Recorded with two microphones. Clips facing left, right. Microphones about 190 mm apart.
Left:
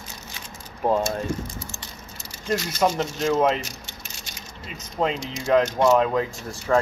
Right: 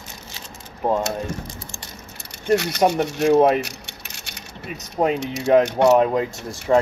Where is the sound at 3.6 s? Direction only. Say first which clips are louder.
Right 7 dB; 65° right (ahead or behind).